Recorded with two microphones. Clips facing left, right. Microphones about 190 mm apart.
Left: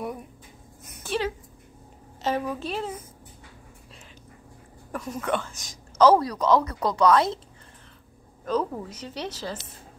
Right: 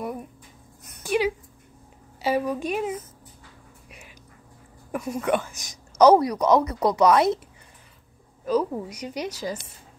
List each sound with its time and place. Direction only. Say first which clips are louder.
1.0 s a woman's voice: right 4 dB; 10° right (ahead or behind)
4.9 s a woman's voice: right 4 dB; 10° right (ahead or behind)
8.5 s a woman's voice: right 3 dB; 10° right (ahead or behind)